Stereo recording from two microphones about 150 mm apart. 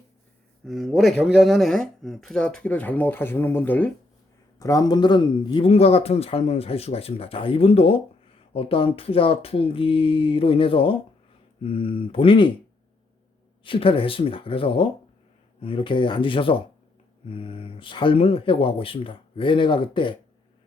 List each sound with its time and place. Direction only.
0.6 s speech: centre (ahead or behind)
4.6 s speech: 25° left (ahead or behind)
13.7 s speech: 35° left (ahead or behind)